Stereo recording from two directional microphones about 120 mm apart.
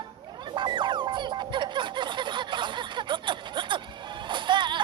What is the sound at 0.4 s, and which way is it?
Music, 40° right (ahead or behind).